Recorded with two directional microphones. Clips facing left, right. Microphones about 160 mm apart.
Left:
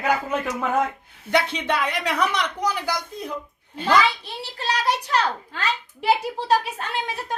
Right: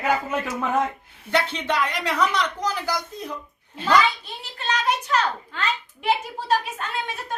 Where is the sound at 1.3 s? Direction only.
10° left (ahead or behind).